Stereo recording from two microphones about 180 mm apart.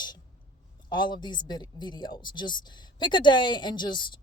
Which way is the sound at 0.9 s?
25° left (ahead or behind).